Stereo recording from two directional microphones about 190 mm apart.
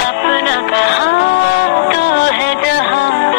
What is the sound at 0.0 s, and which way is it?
Music, 65° left (ahead or behind).